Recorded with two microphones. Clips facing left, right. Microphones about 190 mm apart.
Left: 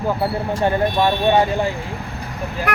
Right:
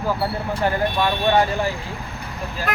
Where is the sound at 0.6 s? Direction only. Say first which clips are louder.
Left 3 dB; 25° left (ahead or behind).